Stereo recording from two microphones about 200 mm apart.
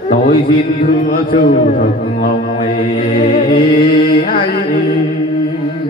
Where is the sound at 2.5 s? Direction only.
25° left (ahead or behind).